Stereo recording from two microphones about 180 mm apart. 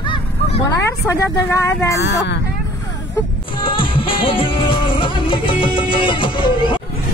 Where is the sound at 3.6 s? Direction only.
30° left (ahead or behind).